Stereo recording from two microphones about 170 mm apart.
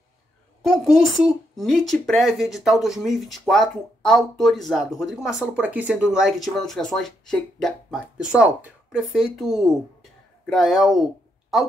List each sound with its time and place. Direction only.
0.7 s speech: centre (ahead or behind)